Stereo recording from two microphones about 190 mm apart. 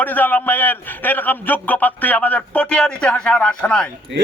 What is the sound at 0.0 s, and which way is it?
A man's voice, 10° left (ahead or behind).